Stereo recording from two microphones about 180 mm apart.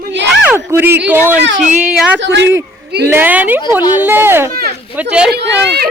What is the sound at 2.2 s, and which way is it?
Speech, 80° right.